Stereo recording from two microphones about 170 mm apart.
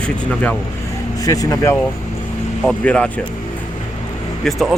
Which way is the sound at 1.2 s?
20° left (ahead or behind).